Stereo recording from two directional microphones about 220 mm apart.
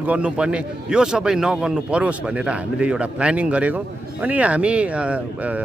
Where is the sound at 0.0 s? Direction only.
5° right (ahead or behind).